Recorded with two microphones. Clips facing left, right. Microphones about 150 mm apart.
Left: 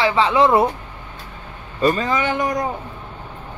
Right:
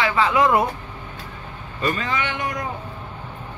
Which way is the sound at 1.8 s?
40° left (ahead or behind).